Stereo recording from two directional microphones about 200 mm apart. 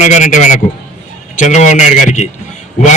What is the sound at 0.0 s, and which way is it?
A man's voice, 35° left (ahead or behind).